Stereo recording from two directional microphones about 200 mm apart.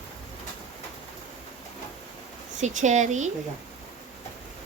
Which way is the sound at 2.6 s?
35° right (ahead or behind).